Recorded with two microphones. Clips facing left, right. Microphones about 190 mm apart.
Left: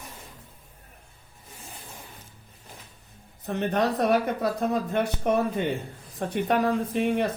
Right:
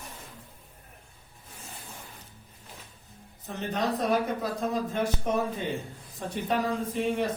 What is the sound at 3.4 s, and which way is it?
Speech, 60° left (ahead or behind).